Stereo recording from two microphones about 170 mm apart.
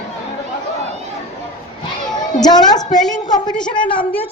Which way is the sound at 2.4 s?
25° left (ahead or behind).